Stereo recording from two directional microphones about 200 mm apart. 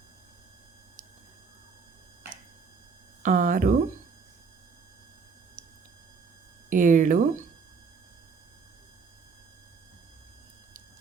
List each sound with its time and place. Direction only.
3.2 s speech: 40° right (ahead or behind)
6.7 s speech: 40° right (ahead or behind)